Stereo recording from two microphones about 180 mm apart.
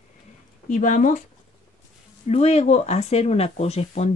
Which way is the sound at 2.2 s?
35° left (ahead or behind).